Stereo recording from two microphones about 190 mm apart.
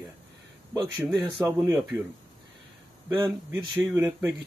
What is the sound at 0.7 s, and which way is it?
Speech, 20° right (ahead or behind).